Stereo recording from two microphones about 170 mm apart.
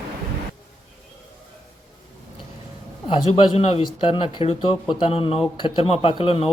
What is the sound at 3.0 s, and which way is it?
Speech, 35° left (ahead or behind).